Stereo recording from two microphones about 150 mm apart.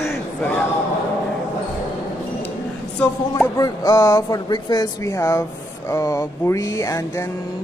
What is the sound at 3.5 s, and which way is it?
Speech, 25° left (ahead or behind).